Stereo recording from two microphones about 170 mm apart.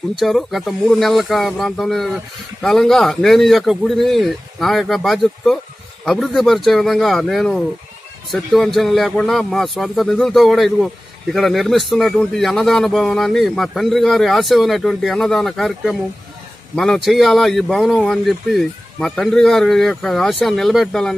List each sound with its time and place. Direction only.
0.2 s speech: centre (ahead or behind)